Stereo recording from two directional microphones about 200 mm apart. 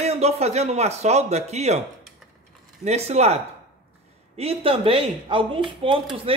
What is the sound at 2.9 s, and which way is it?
A man's voice, 35° right (ahead or behind).